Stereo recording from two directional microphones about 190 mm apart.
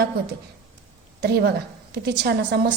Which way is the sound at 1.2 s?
60° right (ahead or behind).